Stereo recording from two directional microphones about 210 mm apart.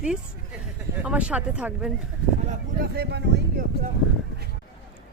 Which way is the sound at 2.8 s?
50° right (ahead or behind).